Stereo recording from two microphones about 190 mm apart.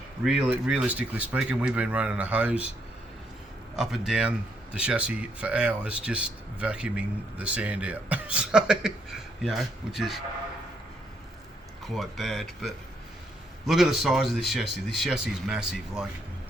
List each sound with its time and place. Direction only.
0.3 s speech: 5° right (ahead or behind)
3.8 s speech: centre (ahead or behind)
11.8 s speech: centre (ahead or behind)